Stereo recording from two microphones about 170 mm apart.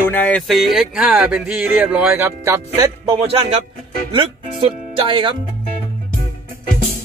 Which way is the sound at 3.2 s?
35° right (ahead or behind).